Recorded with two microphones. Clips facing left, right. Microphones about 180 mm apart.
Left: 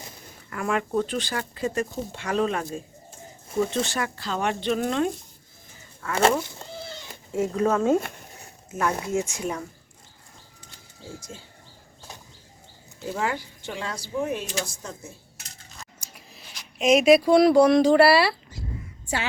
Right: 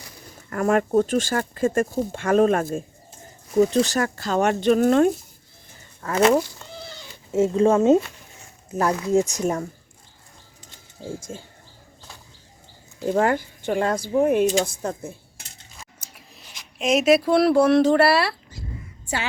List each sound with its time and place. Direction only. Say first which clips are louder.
0.5 s speech: right 6 dB; 45° right (ahead or behind)
3.6 s a woman's voice: right 7 dB; 40° right (ahead or behind)
6.6 s cat: left 1 dB; 35° left (ahead or behind)
7.3 s speech: right 5 dB; 25° right (ahead or behind)
8.7 s a woman's voice: right 6 dB; 35° right (ahead or behind)
11.3 s speech: right 6 dB; 50° right (ahead or behind)
13.1 s a woman's voice: right 8 dB; 50° right (ahead or behind)
15.8 s speech: even; 5° right (ahead or behind)